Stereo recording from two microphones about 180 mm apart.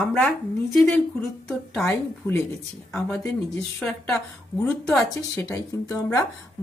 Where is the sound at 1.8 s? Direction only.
15° left (ahead or behind).